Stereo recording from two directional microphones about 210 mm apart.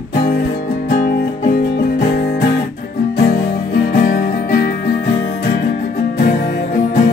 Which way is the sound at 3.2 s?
50° left (ahead or behind).